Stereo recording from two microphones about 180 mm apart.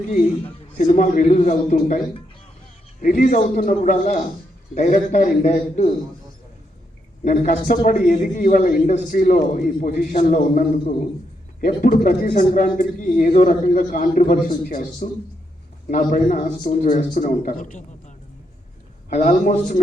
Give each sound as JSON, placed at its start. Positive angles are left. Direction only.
{"t": 0.8, "sound": "a man's voice", "side_deg": 45}
{"t": 3.0, "sound": "a man's voice", "side_deg": 50}
{"t": 5.4, "sound": "a man's voice", "side_deg": 35}
{"t": 7.3, "sound": "a man's voice", "side_deg": 50}
{"t": 15.9, "sound": "a man's voice", "side_deg": 45}
{"t": 19.1, "sound": "a man's voice", "side_deg": 45}